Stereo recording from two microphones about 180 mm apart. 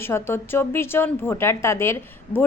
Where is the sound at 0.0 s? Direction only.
15° left (ahead or behind).